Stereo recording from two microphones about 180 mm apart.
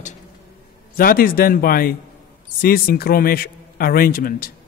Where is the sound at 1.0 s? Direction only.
55° left (ahead or behind).